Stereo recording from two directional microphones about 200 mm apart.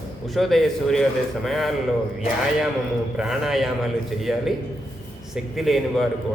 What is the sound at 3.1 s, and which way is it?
A man's voice, centre (ahead or behind).